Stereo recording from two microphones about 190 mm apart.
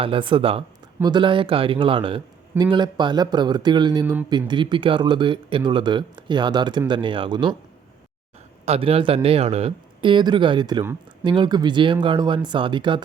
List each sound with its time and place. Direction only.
0.0 s speech: 25° right (ahead or behind)
4.0 s speech: 10° right (ahead or behind)
4.3 s speech: 25° right (ahead or behind)
8.6 s speech: 30° right (ahead or behind)